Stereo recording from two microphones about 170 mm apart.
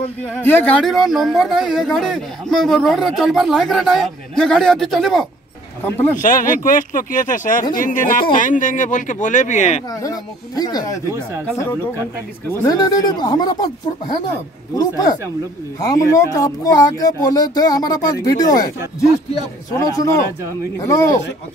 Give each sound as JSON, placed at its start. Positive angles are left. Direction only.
{"t": 0.4, "sound": "speech", "side_deg": 10}
{"t": 6.1, "sound": "speech", "side_deg": 50}
{"t": 9.9, "sound": "speech", "side_deg": 20}
{"t": 11.1, "sound": "speech", "side_deg": -15}
{"t": 12.6, "sound": "speech", "side_deg": 20}
{"t": 14.8, "sound": "speech", "side_deg": 20}
{"t": 19.7, "sound": "speech", "side_deg": 20}